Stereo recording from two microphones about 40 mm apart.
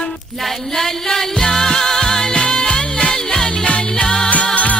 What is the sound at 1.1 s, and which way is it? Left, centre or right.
Music, centre.